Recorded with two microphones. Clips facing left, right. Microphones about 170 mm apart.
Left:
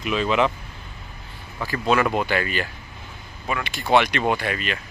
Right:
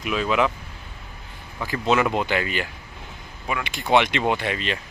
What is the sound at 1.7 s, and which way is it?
Speech, 20° right (ahead or behind).